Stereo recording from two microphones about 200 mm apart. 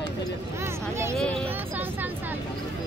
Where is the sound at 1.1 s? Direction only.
5° left (ahead or behind).